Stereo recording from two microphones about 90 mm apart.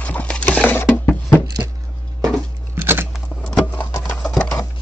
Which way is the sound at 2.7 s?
25° right (ahead or behind).